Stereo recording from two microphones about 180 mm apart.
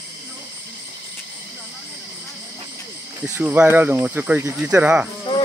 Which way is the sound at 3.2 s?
10° right (ahead or behind).